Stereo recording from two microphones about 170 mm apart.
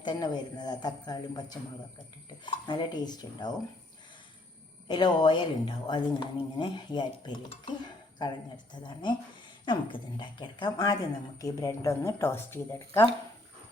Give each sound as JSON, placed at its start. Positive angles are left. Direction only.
{"t": 0.0, "sound": "a woman's voice", "side_deg": 25}
{"t": 4.9, "sound": "a woman's voice", "side_deg": 25}
{"t": 8.7, "sound": "a woman's voice", "side_deg": 25}